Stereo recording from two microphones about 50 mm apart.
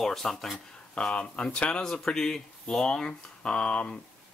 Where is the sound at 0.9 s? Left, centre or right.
Centre.